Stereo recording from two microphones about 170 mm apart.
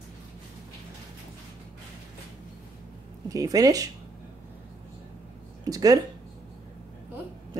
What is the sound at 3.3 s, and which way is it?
Speech, 20° right (ahead or behind).